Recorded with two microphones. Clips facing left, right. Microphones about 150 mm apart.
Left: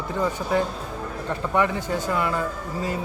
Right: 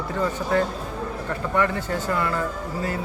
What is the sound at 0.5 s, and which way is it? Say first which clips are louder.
Speech: right 1 dB; 15° left (ahead or behind).